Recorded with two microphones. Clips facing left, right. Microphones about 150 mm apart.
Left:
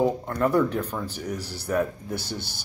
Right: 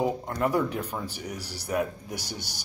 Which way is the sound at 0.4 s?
10° right (ahead or behind).